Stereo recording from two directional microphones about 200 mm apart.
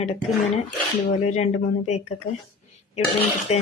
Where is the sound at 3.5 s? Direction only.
35° left (ahead or behind).